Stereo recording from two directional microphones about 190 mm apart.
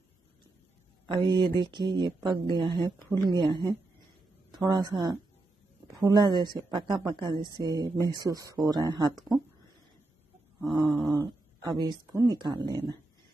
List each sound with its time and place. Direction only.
1.0 s a woman's voice: 25° right (ahead or behind)
10.6 s speech: 20° right (ahead or behind)